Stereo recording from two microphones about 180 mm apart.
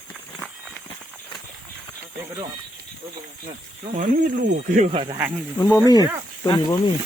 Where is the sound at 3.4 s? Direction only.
35° right (ahead or behind).